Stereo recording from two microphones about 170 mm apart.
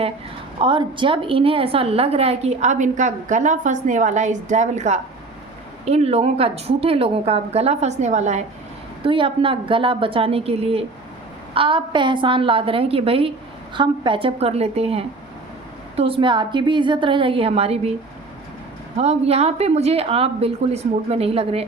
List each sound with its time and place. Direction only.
0.6 s a woman's voice: 30° right (ahead or behind)
9.0 s a woman's voice: 30° right (ahead or behind)
18.9 s a woman's voice: 40° right (ahead or behind)